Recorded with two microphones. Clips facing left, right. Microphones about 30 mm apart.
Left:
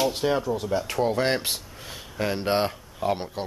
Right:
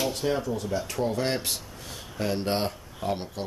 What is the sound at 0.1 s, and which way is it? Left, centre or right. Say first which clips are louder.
Speech: left 3 dB; left.